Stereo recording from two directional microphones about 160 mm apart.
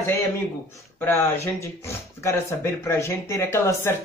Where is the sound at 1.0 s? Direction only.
15° left (ahead or behind).